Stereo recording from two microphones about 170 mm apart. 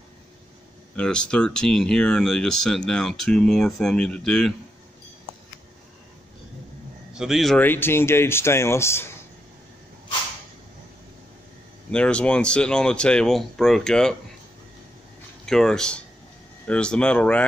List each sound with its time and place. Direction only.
0.9 s speech: 5° left (ahead or behind)
7.2 s speech: centre (ahead or behind)
7.6 s speech: 10° left (ahead or behind)
11.9 s speech: 5° left (ahead or behind)
15.4 s speech: 5° left (ahead or behind)